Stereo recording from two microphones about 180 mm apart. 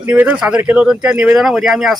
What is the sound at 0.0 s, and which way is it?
A man's voice, 10° right (ahead or behind).